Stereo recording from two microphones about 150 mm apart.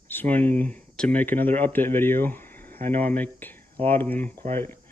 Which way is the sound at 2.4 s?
75° right (ahead or behind).